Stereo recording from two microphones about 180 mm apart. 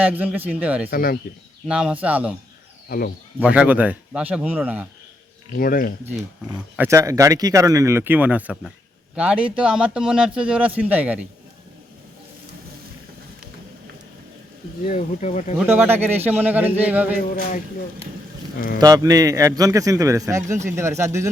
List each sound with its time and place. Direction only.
0.0 s speech: 10° right (ahead or behind)
0.9 s speech: 55° left (ahead or behind)
1.6 s speech: 5° right (ahead or behind)
3.4 s speech: 5° right (ahead or behind)
5.5 s speech: 55° left (ahead or behind)
6.7 s speech: 15° right (ahead or behind)
14.8 s speech: 40° left (ahead or behind)
15.6 s speech: 10° right (ahead or behind)
18.8 s a man's voice: 20° right (ahead or behind)